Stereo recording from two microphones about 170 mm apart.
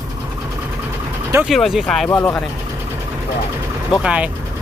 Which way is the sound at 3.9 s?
5° right (ahead or behind).